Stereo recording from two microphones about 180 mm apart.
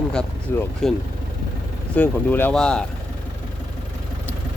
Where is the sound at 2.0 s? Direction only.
10° left (ahead or behind).